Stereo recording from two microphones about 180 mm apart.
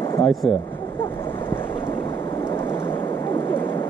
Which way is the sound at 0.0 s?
20° left (ahead or behind).